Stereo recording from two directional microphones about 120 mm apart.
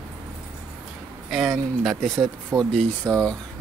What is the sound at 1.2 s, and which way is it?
Speech, centre (ahead or behind).